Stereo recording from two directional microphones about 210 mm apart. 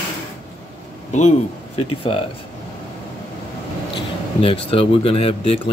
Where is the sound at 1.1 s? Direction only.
35° left (ahead or behind).